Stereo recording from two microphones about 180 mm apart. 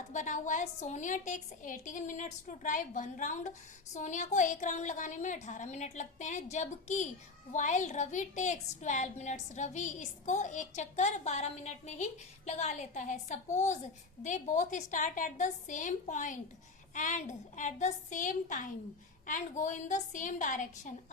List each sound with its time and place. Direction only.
0.1 s a woman's voice: 45° left (ahead or behind)